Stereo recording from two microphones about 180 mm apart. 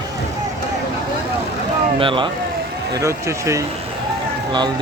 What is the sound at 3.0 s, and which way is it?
Speech, 15° right (ahead or behind).